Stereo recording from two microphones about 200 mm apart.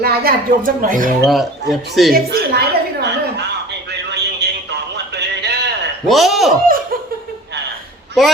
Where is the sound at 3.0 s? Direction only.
55° right (ahead or behind).